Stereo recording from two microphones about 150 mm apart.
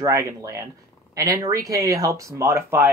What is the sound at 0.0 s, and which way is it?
Speech, 20° right (ahead or behind).